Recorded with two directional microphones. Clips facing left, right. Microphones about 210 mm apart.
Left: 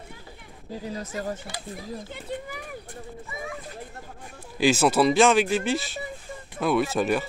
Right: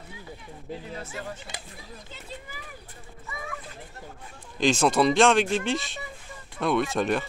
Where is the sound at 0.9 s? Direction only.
40° left (ahead or behind).